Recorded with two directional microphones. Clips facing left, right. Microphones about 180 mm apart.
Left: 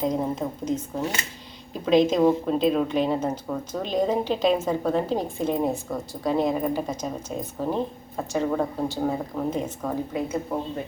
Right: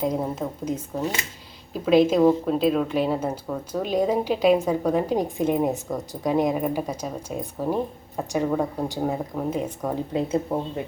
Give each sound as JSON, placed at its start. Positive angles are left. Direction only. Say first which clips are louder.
{"t": 0.0, "sound": "speech", "louder": "even", "side_deg": -5}
{"t": 10.1, "sound": "speech", "louder": "right 3 dB", "side_deg": -30}